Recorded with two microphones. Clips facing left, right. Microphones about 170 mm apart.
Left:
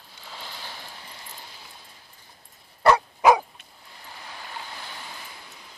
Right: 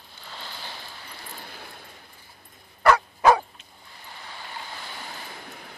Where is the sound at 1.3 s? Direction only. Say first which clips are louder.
Right 4 dB; 60° right (ahead or behind).